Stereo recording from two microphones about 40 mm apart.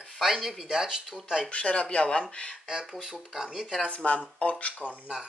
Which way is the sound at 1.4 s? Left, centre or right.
Left.